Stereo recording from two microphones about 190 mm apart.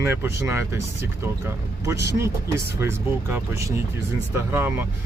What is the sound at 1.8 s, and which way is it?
Speech, 15° right (ahead or behind).